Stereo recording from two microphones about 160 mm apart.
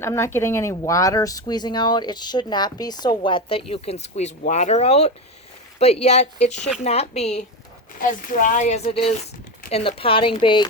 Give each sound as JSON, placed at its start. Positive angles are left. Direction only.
{"t": 0.0, "sound": "speech", "side_deg": 15}
{"t": 8.0, "sound": "speech", "side_deg": 55}